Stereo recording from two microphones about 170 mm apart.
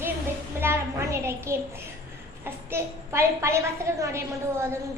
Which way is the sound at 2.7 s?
15° right (ahead or behind).